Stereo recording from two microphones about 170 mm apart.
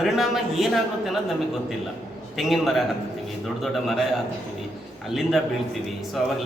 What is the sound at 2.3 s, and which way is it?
A man's voice, centre (ahead or behind).